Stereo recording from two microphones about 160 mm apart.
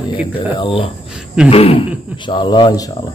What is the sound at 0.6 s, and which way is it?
A man's voice, 35° left (ahead or behind).